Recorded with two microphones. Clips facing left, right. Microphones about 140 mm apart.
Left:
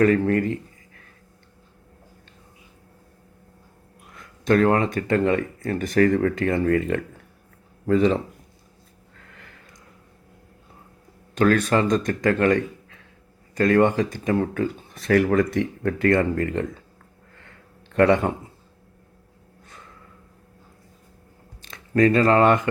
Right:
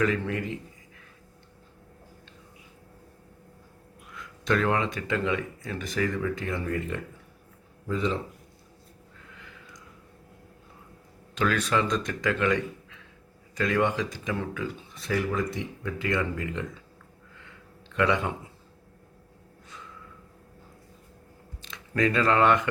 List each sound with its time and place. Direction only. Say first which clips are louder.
0.0 s a man's voice: left 9 dB; 50° left (ahead or behind)
4.1 s a man's voice: left 7 dB; 45° left (ahead or behind); by 8.2 s 70° left (ahead or behind)
9.1 s a sound: left 1 dB; 60° left (ahead or behind)
11.3 s speech: left 7 dB; 50° left (ahead or behind)
14.9 s speech: left 10 dB; 65° left (ahead or behind)
17.3 s a sound: left 1 dB; 50° left (ahead or behind)
21.6 s speech: left 7 dB; 45° left (ahead or behind)